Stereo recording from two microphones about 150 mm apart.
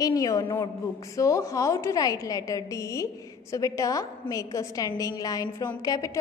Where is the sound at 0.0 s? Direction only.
25° left (ahead or behind).